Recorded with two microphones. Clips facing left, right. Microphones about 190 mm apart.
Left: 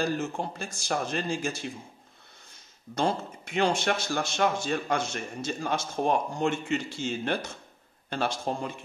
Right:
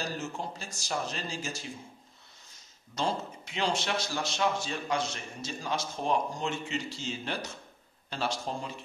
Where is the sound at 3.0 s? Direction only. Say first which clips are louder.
Left 4 dB; 55° left (ahead or behind).